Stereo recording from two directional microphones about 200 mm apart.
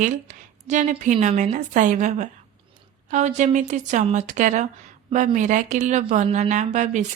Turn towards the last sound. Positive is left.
turn(degrees=-40)  # may be behind; listen again after turning